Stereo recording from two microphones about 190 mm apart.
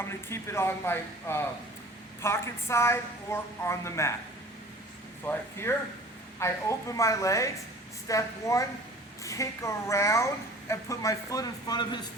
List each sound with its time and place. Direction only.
0.0 s speech: 15° left (ahead or behind)
5.2 s speech: 10° left (ahead or behind)